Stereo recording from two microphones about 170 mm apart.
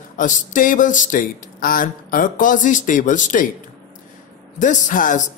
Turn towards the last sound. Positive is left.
turn(degrees=50)  # may be behind; listen again after turning